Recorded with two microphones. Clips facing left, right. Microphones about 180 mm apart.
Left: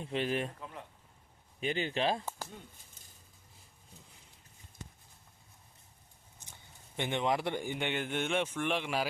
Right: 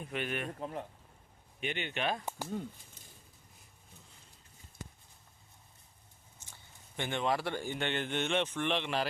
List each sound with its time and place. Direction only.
0.0 s a man's voice: 30° left (ahead or behind)
0.6 s speech: 40° right (ahead or behind)
1.6 s speech: 35° left (ahead or behind)
6.9 s a man's voice: 20° left (ahead or behind)